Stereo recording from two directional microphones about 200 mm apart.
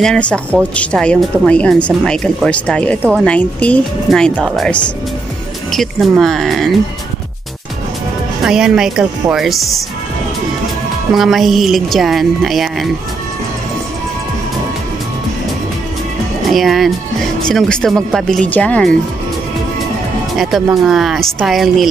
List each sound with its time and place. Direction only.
0.0 s speech: 5° left (ahead or behind)
8.5 s speech: 5° right (ahead or behind)
11.1 s speech: centre (ahead or behind)
16.4 s speech: centre (ahead or behind)
20.6 s speech: centre (ahead or behind)